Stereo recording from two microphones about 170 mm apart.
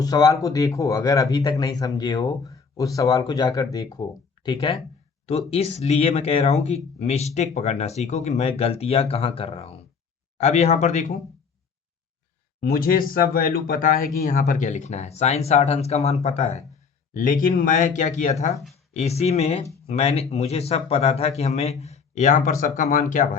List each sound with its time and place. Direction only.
0.0 s speech: 20° left (ahead or behind); by 11.0 s 40° left (ahead or behind)
12.5 s speech: 60° left (ahead or behind); by 16.6 s 40° left (ahead or behind)
17.2 s speech: 55° left (ahead or behind)